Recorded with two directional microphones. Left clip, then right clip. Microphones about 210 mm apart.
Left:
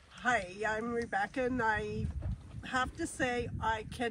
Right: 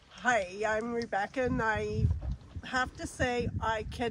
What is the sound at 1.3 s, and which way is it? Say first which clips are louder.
Speech: right 2 dB; 50° right (ahead or behind).